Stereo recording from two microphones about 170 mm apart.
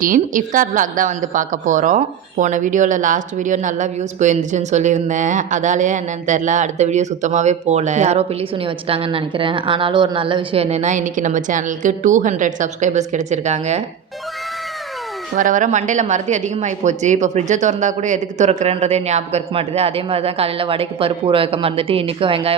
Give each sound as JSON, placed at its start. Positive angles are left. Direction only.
{"t": 0.0, "sound": "a woman's voice", "side_deg": -55}
{"t": 15.4, "sound": "a woman's voice", "side_deg": -50}